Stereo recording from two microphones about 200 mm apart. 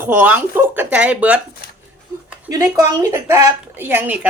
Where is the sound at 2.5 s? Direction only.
15° right (ahead or behind).